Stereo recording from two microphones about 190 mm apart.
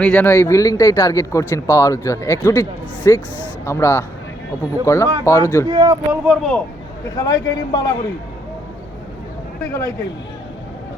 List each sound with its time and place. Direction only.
0.0 s speech: 5° left (ahead or behind)
5.7 s speech: 20° right (ahead or behind)
6.2 s speech: centre (ahead or behind)
7.2 s a man's voice: 20° left (ahead or behind)